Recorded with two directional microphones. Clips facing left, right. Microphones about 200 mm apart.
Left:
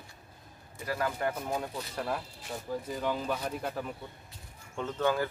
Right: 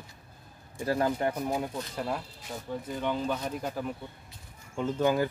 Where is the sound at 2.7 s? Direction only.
5° left (ahead or behind); by 5.3 s 15° right (ahead or behind).